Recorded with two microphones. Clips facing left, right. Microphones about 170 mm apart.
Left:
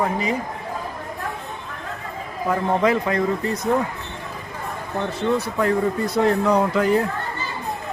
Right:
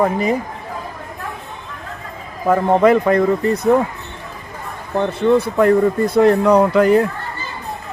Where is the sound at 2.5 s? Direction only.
55° right (ahead or behind).